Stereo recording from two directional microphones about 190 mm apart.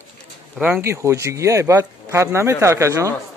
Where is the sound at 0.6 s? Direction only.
10° right (ahead or behind).